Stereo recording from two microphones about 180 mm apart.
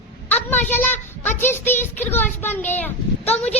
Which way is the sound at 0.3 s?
10° left (ahead or behind).